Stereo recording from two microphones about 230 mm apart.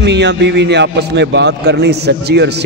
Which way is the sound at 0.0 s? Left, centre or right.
Right.